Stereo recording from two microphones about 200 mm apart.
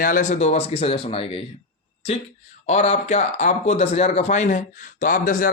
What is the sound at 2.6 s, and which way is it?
A man's voice, 35° left (ahead or behind).